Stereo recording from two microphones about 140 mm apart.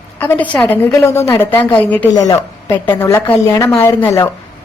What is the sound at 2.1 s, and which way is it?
A woman's voice, 25° left (ahead or behind).